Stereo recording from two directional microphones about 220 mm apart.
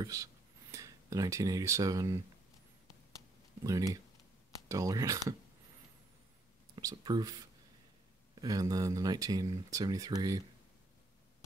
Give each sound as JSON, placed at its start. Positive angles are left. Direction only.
{"t": 0.0, "sound": "speech", "side_deg": -15}
{"t": 3.6, "sound": "speech", "side_deg": -15}
{"t": 6.7, "sound": "speech", "side_deg": -15}